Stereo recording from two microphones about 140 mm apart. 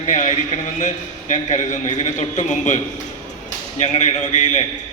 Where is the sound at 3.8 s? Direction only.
55° left (ahead or behind).